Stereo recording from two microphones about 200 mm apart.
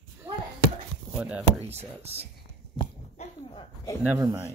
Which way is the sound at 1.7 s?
30° right (ahead or behind).